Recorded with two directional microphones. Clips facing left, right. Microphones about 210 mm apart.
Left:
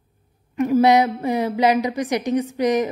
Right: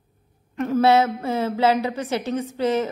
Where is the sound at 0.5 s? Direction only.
10° left (ahead or behind).